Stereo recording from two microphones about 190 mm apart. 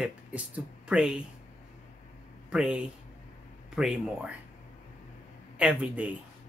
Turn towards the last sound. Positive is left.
turn(degrees=-5)  # may be behind; listen again after turning